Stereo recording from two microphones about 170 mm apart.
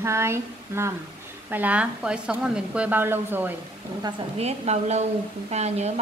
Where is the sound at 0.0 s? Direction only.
15° right (ahead or behind).